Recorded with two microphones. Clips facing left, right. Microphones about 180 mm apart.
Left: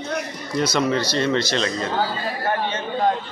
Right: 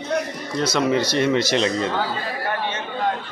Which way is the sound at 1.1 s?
15° right (ahead or behind).